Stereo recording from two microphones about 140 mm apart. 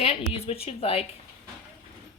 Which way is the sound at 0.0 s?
45° left (ahead or behind).